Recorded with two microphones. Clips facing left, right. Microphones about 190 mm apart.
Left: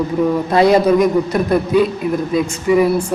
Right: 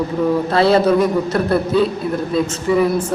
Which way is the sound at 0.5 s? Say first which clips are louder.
Left 3 dB; 15° left (ahead or behind).